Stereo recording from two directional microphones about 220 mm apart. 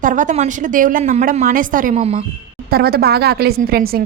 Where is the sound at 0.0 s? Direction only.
35° right (ahead or behind).